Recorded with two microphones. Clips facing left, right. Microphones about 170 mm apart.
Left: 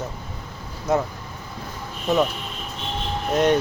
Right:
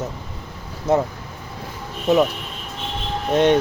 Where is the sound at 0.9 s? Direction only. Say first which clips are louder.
Right 3 dB; 30° right (ahead or behind).